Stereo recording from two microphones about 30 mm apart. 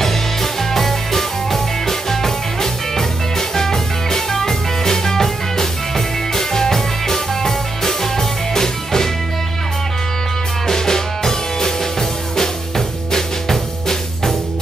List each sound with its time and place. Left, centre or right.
0.0 s music: centre
10.7 s music: centre